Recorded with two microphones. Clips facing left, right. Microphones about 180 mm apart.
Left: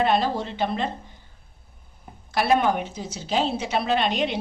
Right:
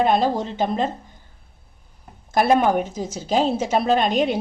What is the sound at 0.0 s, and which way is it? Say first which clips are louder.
Speech: right 3 dB; 45° right (ahead or behind).